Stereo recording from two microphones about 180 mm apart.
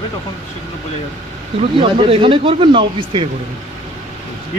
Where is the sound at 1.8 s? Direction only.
30° right (ahead or behind).